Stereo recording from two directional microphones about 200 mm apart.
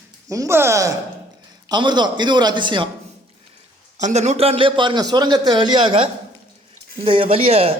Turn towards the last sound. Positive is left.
turn(degrees=-30)  # may be behind; listen again after turning